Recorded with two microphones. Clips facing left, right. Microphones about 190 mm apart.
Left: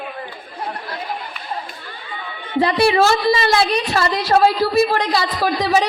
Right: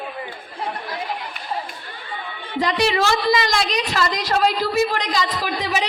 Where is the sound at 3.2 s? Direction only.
30° left (ahead or behind).